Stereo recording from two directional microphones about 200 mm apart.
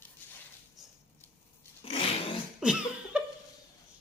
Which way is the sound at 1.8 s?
30° left (ahead or behind).